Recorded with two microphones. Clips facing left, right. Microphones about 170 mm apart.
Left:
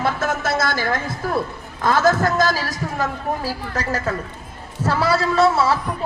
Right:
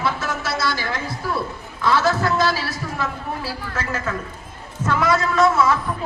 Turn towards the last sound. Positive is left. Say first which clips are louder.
# left 1 dB
turn(degrees=30)  # may be behind; listen again after turning